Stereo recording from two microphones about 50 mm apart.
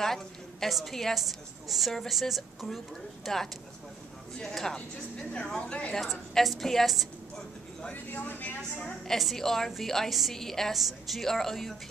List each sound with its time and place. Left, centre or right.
0.0 s a woman's voice: centre
5.3 s speech: left
5.9 s a woman's voice: centre
7.9 s a woman's voice: left
9.0 s a woman's voice: centre
10.3 s a woman's voice: centre
10.7 s a woman's voice: centre